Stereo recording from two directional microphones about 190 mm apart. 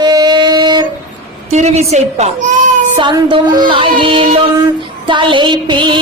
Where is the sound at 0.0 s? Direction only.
20° right (ahead or behind).